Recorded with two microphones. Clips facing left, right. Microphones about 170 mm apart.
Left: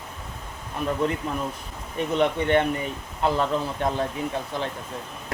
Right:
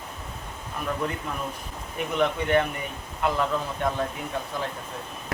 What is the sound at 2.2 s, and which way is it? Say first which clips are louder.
Speech: left 1 dB; 30° left (ahead or behind).